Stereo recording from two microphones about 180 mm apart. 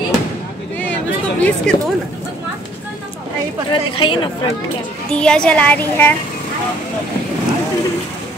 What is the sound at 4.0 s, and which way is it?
Speech, 30° left (ahead or behind).